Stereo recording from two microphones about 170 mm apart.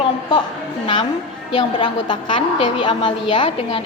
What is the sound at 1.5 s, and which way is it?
A woman's voice, 25° left (ahead or behind).